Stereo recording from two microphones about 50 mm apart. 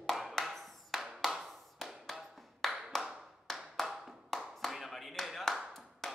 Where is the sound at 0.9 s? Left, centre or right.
Centre.